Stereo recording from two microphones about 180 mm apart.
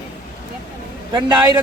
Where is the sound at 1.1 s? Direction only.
25° right (ahead or behind).